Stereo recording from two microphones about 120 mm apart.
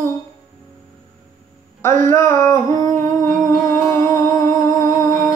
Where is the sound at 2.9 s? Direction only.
90° right.